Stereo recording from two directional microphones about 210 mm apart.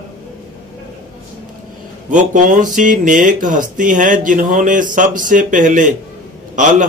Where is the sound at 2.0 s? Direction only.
35° right (ahead or behind).